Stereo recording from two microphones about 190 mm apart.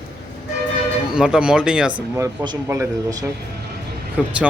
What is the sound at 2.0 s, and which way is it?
A man's voice, 15° right (ahead or behind).